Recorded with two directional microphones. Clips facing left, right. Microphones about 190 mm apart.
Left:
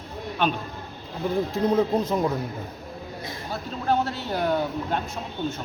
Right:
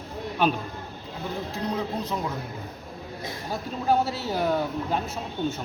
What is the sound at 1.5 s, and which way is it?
Speech, 45° left (ahead or behind).